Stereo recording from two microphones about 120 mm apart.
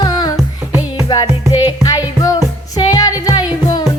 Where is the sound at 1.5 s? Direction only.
30° left (ahead or behind).